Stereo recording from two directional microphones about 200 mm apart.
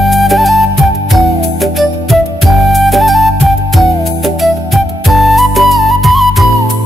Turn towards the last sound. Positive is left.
turn(degrees=0)  # may be behind; listen again after turning